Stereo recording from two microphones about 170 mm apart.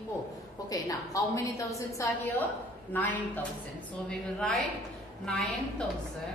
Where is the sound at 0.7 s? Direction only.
20° left (ahead or behind); by 5.8 s 5° left (ahead or behind).